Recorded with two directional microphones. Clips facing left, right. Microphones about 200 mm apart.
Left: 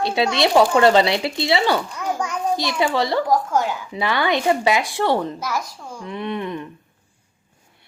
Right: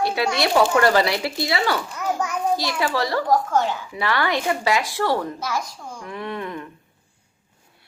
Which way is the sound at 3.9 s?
20° left (ahead or behind).